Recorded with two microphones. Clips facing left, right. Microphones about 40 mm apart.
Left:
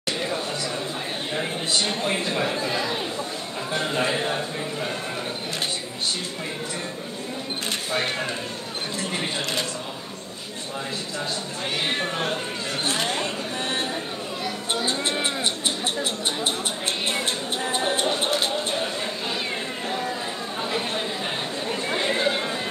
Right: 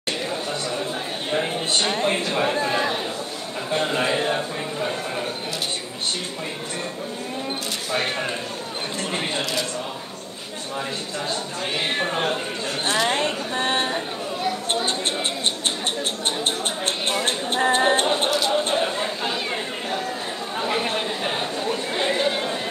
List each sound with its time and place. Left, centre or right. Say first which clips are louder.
1.7 s a man's voice: right 2 dB; right
11.8 s speech: right 2 dB; centre
12.8 s chatter: right 5 dB; right
17.2 s a sound: right 5 dB; right
20.6 s chatter: right 4 dB; right
22.2 s a sound: right 1 dB; centre